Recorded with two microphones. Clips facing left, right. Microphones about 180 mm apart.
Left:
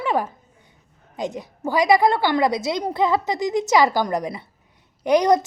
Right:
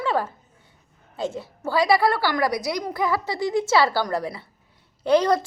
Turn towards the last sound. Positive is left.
turn(degrees=15)  # may be behind; listen again after turning